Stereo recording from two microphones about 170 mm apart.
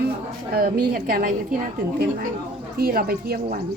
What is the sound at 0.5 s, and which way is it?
Speech, 60° right (ahead or behind).